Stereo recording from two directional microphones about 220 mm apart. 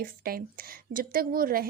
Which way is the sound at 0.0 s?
40° right (ahead or behind).